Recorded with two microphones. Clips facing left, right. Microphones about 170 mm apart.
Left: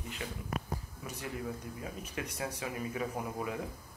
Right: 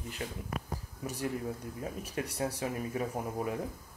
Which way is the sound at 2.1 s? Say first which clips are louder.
Right 5 dB; 40° right (ahead or behind).